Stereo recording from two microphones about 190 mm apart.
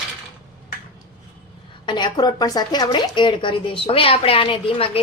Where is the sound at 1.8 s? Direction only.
25° left (ahead or behind).